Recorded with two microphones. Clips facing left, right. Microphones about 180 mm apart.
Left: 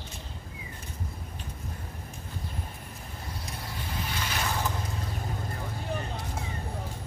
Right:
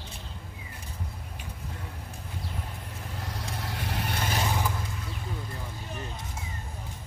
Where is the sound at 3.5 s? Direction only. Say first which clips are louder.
Right 3 dB; 70° right (ahead or behind).